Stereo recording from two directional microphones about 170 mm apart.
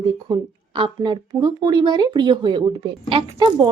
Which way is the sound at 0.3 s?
30° right (ahead or behind).